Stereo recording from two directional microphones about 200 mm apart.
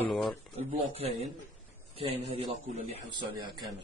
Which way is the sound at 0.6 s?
30° right (ahead or behind).